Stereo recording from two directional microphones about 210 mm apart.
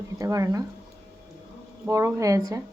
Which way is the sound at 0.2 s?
15° right (ahead or behind).